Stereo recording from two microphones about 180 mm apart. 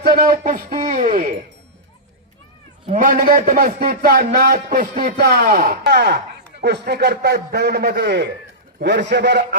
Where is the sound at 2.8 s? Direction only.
45° right (ahead or behind).